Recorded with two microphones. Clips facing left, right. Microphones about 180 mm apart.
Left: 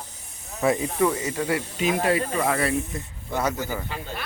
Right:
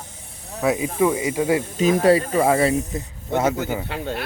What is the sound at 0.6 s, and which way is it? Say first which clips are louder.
Speech: right 2 dB; 5° right (ahead or behind).